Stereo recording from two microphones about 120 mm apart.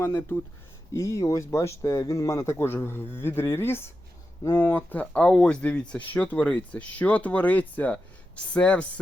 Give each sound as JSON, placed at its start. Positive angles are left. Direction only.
{"t": 0.0, "sound": "speech", "side_deg": 20}